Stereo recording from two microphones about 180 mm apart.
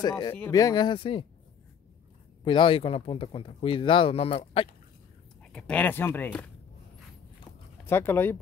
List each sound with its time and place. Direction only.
0.0 s speech: 20° left (ahead or behind)
2.4 s speech: 25° left (ahead or behind)
5.4 s speech: 5° left (ahead or behind)
7.8 s speech: 15° left (ahead or behind)